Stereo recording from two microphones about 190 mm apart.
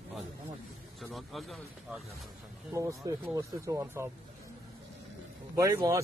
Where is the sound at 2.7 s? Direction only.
15° right (ahead or behind).